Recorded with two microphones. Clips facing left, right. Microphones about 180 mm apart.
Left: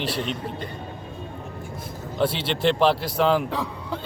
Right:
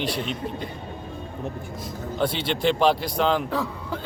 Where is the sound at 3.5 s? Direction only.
15° left (ahead or behind).